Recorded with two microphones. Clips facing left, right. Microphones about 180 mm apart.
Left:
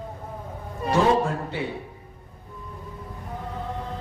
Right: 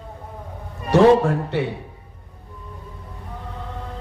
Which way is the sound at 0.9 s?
70° right (ahead or behind).